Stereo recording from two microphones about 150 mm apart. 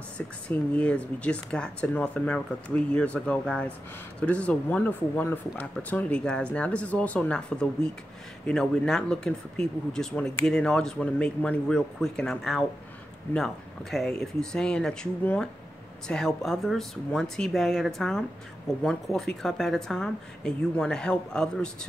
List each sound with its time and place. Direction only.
0.5 s speech: 10° left (ahead or behind)